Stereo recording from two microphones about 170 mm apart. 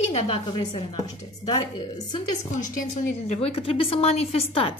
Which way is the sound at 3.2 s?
40° left (ahead or behind).